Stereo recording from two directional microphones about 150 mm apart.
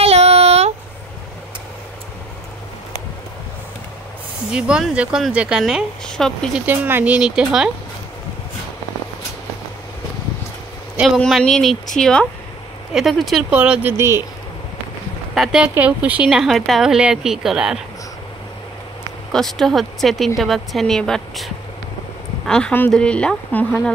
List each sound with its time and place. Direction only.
0.0 s a sound: 45° right (ahead or behind)
4.5 s speech: 5° right (ahead or behind)
6.6 s speech: 10° right (ahead or behind)
11.0 s speech: centre (ahead or behind); by 14.2 s 15° right (ahead or behind)
15.3 s speech: centre (ahead or behind)
19.3 s speech: centre (ahead or behind)
22.5 s speech: 10° left (ahead or behind)